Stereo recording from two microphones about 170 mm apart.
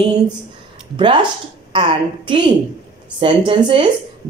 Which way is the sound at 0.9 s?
25° right (ahead or behind).